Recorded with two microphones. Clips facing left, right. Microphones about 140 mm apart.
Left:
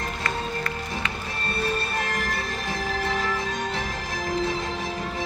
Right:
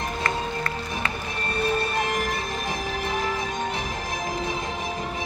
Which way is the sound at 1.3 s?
15° right (ahead or behind).